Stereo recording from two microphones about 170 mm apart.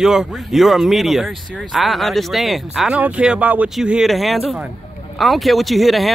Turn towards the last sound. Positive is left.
turn(degrees=0)  # may be behind; listen again after turning